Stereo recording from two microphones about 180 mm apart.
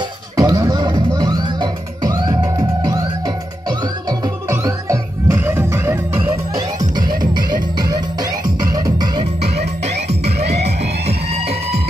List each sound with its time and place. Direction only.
0.4 s music: 20° right (ahead or behind)
4.5 s music: 15° right (ahead or behind)
7.9 s music: 20° right (ahead or behind)
9.4 s music: 40° right (ahead or behind)
10.2 s music: 65° right (ahead or behind)